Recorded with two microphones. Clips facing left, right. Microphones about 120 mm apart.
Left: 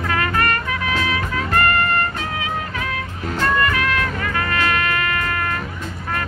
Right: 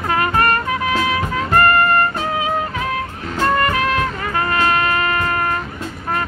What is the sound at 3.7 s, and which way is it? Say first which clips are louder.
Music: right 3 dB; 35° right (ahead or behind).